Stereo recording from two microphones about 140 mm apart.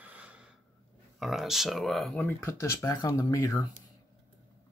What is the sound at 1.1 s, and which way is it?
Speech, centre (ahead or behind).